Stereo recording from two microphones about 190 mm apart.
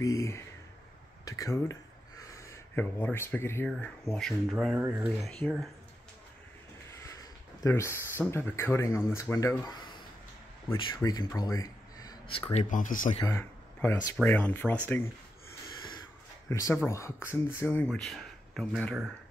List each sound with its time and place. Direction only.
0.0 s speech: 15° left (ahead or behind); by 5.3 s 5° right (ahead or behind)
7.0 s speech: 15° left (ahead or behind)
12.6 s speech: 45° left (ahead or behind)
13.1 s speech: 20° left (ahead or behind)
16.4 s speech: 15° left (ahead or behind)